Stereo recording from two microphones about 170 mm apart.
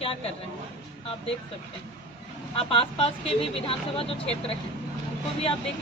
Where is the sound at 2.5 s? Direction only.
35° left (ahead or behind).